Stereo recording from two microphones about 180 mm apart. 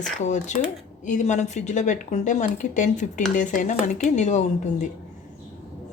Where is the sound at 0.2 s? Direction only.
40° left (ahead or behind).